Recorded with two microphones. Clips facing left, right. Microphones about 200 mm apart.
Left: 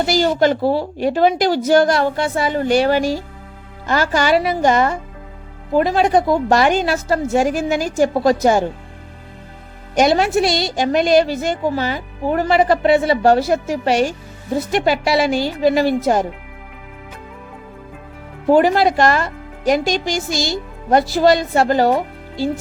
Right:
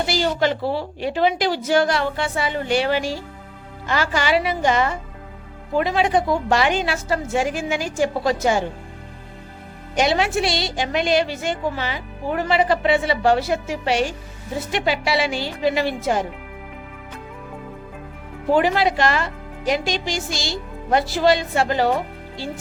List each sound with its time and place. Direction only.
0.0 s a woman's voice: 45° left (ahead or behind)
9.9 s a woman's voice: 45° left (ahead or behind)
18.5 s speech: 45° left (ahead or behind)